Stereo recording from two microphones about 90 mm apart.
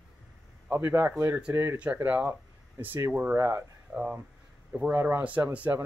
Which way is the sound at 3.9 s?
20° right (ahead or behind).